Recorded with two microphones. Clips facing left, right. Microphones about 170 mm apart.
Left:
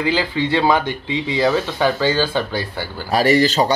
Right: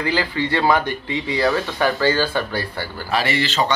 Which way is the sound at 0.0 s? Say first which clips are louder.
Left 2 dB; 15° left (ahead or behind).